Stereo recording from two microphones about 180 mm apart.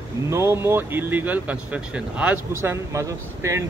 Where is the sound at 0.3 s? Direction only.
15° right (ahead or behind).